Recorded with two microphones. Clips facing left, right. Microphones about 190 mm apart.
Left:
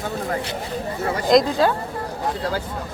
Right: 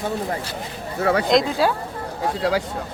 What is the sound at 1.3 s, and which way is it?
Speech, centre (ahead or behind).